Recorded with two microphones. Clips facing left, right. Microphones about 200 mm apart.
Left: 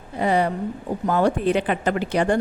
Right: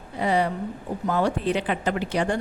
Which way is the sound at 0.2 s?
50° left (ahead or behind).